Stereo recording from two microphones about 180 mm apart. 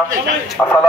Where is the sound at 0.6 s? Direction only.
10° left (ahead or behind).